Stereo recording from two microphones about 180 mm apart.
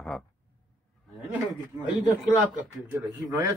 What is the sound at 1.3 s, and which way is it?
Speech, 10° right (ahead or behind).